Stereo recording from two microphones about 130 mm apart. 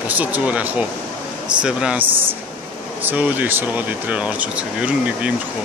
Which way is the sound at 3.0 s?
10° right (ahead or behind).